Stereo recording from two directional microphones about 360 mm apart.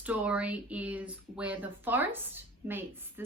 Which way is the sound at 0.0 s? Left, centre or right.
Centre.